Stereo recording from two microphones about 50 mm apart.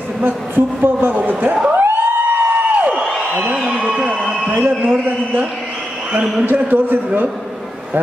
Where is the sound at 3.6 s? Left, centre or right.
Centre.